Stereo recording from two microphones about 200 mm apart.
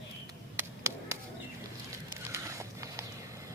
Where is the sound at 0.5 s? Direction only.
15° right (ahead or behind).